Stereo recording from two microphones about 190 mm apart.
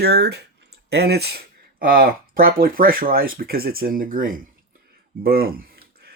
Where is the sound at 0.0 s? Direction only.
55° right (ahead or behind).